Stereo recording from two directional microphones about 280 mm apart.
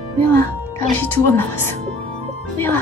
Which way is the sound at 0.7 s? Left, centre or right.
Centre.